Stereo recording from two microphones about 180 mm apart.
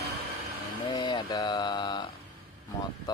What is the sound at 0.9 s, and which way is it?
Speech, 25° left (ahead or behind).